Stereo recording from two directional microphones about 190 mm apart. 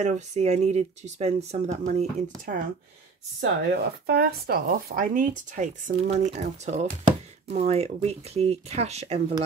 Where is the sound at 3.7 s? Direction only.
55° right (ahead or behind).